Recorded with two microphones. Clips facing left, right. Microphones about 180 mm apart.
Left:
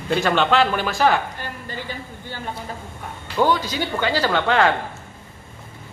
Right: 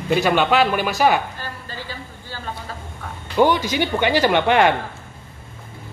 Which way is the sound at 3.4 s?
20° right (ahead or behind).